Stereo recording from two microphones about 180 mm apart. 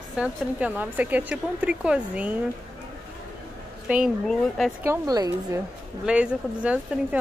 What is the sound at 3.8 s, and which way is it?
Speech, 5° right (ahead or behind).